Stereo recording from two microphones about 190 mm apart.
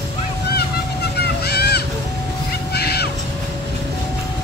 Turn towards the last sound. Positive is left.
turn(degrees=55)  # may be behind; listen again after turning